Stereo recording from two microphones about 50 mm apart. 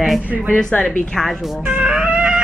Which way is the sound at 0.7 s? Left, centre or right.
Left.